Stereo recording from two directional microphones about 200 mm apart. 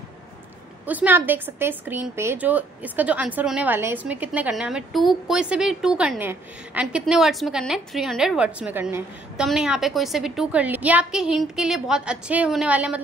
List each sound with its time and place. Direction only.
0.8 s a woman's voice: 10° right (ahead or behind)